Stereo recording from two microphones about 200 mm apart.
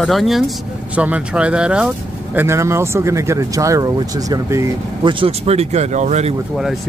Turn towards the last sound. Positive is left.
turn(degrees=-35)  # may be behind; listen again after turning